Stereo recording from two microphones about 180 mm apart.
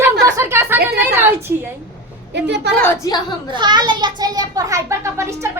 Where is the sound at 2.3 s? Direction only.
75° right (ahead or behind).